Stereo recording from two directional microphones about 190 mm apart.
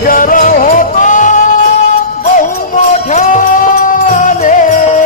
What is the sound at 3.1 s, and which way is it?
Music, 40° left (ahead or behind).